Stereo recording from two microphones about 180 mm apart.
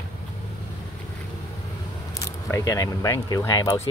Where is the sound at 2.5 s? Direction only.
15° left (ahead or behind).